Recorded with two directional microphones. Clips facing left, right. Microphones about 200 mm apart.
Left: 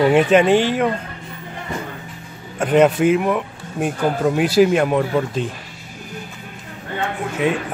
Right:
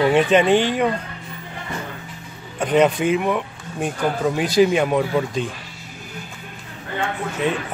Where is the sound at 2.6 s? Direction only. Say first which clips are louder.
Left 3 dB; 5° left (ahead or behind).